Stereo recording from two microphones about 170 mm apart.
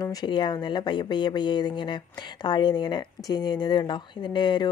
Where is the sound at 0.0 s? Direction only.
25° left (ahead or behind).